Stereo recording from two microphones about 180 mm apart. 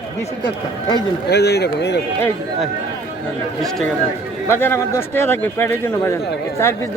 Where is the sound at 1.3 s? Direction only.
65° left (ahead or behind).